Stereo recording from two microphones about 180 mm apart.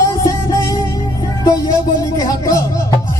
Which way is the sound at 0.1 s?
20° left (ahead or behind).